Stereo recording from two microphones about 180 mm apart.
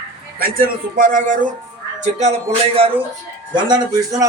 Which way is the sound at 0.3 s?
55° right (ahead or behind).